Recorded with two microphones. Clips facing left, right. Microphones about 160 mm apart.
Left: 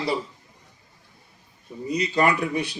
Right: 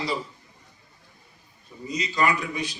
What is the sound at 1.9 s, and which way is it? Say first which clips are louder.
Speech: left 3 dB; 60° left (ahead or behind).